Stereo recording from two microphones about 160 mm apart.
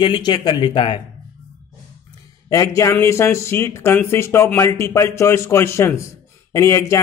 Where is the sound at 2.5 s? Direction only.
20° left (ahead or behind).